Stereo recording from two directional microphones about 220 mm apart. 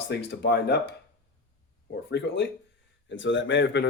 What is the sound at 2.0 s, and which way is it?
Speech, 50° left (ahead or behind).